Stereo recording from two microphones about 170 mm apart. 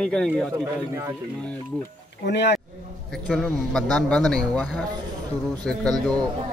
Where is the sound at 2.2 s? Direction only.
90° left.